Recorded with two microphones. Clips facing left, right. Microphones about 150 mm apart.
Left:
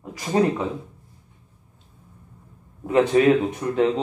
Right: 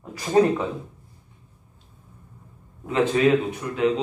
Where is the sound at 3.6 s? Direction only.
30° left (ahead or behind).